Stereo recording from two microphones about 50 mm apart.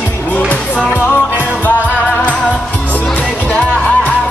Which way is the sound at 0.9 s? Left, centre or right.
Left.